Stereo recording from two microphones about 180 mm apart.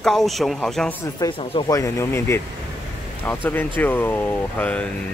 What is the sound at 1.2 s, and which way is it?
Speech, 25° left (ahead or behind).